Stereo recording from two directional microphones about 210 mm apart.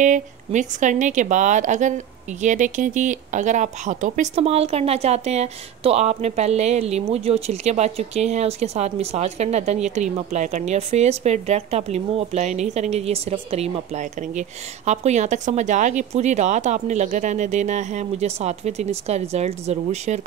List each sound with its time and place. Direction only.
0.0 s speech: 35° right (ahead or behind)